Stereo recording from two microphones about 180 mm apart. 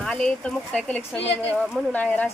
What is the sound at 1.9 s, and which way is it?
Speech, 10° left (ahead or behind).